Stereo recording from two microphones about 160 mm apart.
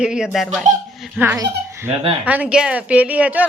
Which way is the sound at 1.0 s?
10° right (ahead or behind).